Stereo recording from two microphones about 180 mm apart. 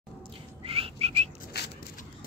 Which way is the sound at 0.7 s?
30° right (ahead or behind).